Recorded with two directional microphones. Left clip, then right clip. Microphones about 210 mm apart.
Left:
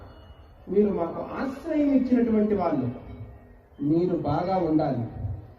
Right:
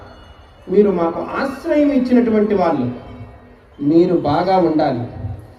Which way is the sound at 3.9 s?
45° right (ahead or behind).